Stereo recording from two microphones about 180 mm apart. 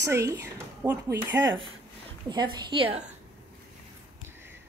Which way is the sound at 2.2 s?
25° right (ahead or behind).